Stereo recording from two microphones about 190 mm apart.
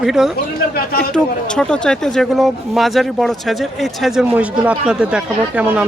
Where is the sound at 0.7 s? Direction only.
50° left (ahead or behind).